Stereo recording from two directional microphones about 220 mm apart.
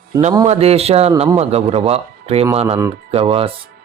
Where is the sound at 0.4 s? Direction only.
30° right (ahead or behind).